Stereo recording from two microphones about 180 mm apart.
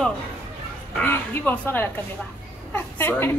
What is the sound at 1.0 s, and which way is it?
Speech, 10° left (ahead or behind).